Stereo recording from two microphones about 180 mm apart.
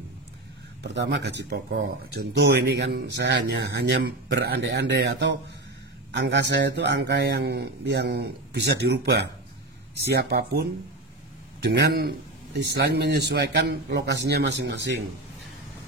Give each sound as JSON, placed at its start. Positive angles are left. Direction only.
{"t": 0.8, "sound": "speech", "side_deg": -70}